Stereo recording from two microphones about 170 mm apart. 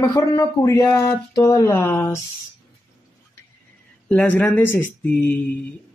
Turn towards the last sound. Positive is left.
turn(degrees=10)  # may be behind; listen again after turning